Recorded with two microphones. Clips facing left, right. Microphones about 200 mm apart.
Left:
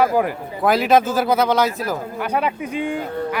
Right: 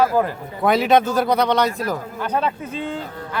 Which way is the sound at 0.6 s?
Centre (ahead or behind).